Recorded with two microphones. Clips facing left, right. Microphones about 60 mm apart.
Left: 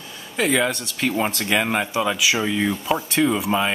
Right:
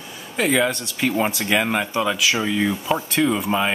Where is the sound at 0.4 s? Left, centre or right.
Centre.